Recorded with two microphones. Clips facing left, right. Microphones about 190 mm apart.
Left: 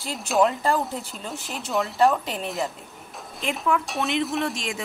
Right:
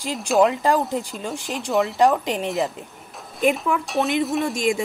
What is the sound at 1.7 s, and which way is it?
Speech, centre (ahead or behind).